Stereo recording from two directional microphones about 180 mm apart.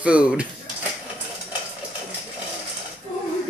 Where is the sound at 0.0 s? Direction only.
5° right (ahead or behind).